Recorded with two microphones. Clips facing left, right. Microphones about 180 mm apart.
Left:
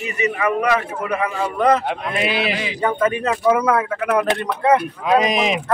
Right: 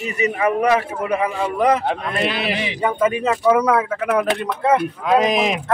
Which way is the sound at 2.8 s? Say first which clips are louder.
Even; 5° right (ahead or behind).